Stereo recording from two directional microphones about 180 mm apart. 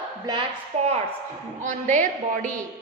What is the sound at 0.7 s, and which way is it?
A woman's voice, 40° right (ahead or behind).